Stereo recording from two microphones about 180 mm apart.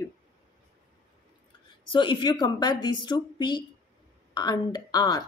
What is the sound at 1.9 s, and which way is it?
Speech, 25° left (ahead or behind).